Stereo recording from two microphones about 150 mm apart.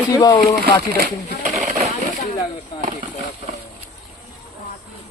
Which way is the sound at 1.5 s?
50° right (ahead or behind).